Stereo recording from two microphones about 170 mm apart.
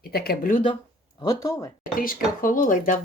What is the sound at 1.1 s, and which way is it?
Speech, 20° left (ahead or behind).